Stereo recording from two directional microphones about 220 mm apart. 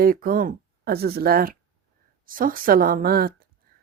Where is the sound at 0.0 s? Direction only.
40° right (ahead or behind).